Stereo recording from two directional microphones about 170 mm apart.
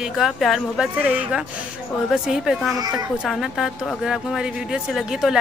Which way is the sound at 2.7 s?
20° right (ahead or behind).